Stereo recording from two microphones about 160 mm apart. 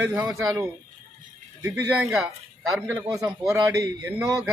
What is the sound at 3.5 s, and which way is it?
Speech, 20° right (ahead or behind).